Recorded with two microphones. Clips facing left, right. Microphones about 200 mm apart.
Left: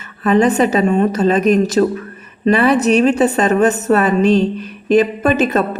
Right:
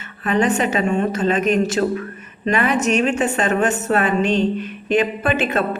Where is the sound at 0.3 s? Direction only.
40° left (ahead or behind).